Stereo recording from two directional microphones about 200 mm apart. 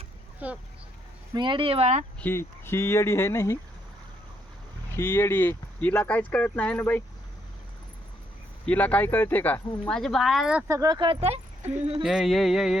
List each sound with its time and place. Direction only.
0.4 s speech: 5° right (ahead or behind)
1.3 s speech: 25° right (ahead or behind)
2.2 s speech: 10° left (ahead or behind)
4.9 s speech: 10° left (ahead or behind)
8.6 s speech: 5° left (ahead or behind)
10.7 s speech: 15° right (ahead or behind)
12.0 s a sound: centre (ahead or behind)